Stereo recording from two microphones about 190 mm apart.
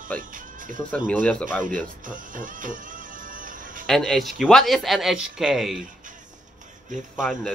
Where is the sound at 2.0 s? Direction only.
45° right (ahead or behind).